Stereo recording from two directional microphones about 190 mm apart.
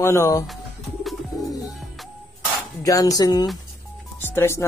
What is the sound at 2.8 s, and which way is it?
Speech, 20° left (ahead or behind).